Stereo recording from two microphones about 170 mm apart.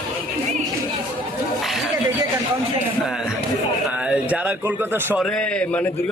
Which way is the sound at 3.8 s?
5° right (ahead or behind).